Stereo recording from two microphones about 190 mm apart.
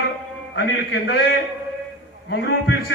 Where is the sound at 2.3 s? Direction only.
65° left (ahead or behind).